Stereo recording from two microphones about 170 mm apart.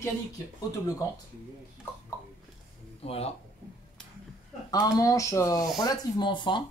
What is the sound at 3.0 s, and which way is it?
Speech, 35° left (ahead or behind).